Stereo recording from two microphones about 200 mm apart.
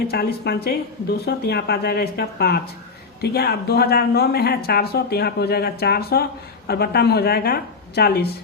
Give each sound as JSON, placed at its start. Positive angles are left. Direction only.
{"t": 0.1, "sound": "speech", "side_deg": 50}